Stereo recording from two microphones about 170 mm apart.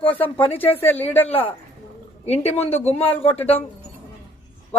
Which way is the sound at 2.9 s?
10° left (ahead or behind).